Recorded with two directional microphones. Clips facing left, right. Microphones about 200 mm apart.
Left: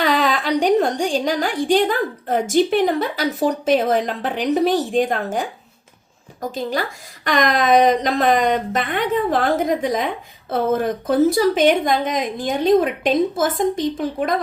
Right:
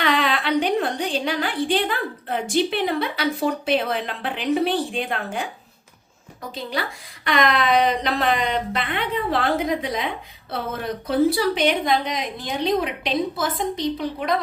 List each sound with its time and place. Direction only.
0.0 s a woman's voice: 40° left (ahead or behind)